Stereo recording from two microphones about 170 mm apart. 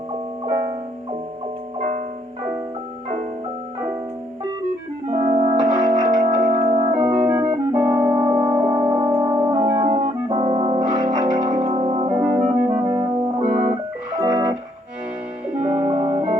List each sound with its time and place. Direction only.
5.1 s music: 35° right (ahead or behind)
7.8 s music: 10° right (ahead or behind)
10.0 s music: 40° right (ahead or behind)
12.1 s music: 10° right (ahead or behind)
14.2 s music: 25° right (ahead or behind)
15.6 s music: 35° right (ahead or behind)